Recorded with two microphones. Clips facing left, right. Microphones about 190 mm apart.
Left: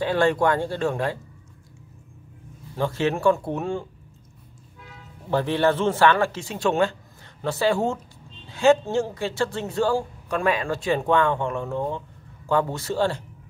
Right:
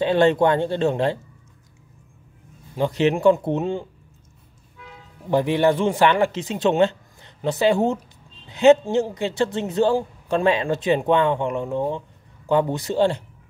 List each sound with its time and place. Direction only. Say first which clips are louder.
0.0 s speech: right 4 dB; 20° right (ahead or behind)
2.7 s speech: right 4 dB; 20° right (ahead or behind)
5.3 s speech: right 3 dB; 15° right (ahead or behind)